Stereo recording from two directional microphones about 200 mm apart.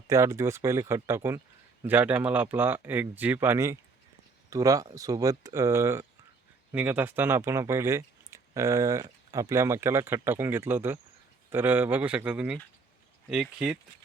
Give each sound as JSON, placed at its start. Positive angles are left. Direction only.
{"t": 0.1, "sound": "speech", "side_deg": -15}